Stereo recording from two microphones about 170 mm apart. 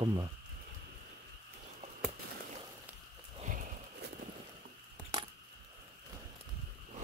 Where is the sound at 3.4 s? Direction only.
50° right (ahead or behind).